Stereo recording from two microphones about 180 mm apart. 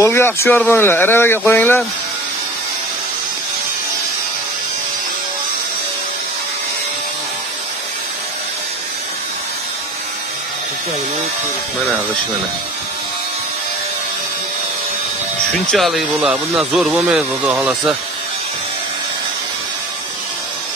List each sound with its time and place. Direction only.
0.0 s speech: 15° left (ahead or behind)
15.6 s speech: centre (ahead or behind)